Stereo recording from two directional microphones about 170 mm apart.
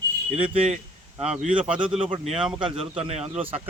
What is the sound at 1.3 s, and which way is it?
Speech, 5° right (ahead or behind).